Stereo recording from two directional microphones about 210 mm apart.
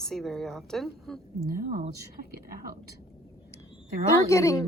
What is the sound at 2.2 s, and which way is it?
Speech, 50° left (ahead or behind).